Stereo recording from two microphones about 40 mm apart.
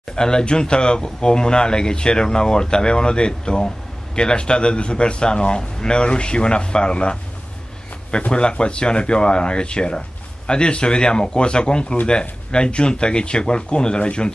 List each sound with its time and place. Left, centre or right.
0.1 s speech: centre
8.3 s speech: left